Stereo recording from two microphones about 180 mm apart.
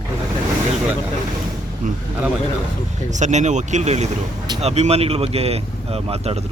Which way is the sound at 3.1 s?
40° right (ahead or behind).